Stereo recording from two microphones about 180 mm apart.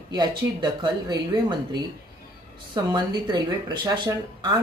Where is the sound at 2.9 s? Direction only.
25° right (ahead or behind).